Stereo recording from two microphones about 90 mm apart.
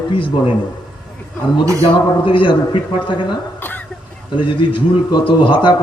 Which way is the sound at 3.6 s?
20° left (ahead or behind).